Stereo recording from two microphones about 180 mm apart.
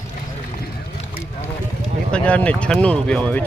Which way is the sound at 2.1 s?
5° left (ahead or behind).